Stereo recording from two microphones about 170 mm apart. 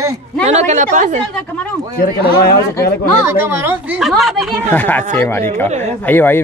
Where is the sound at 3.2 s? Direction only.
15° right (ahead or behind).